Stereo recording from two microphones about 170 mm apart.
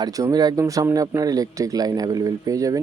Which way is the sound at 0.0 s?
20° right (ahead or behind).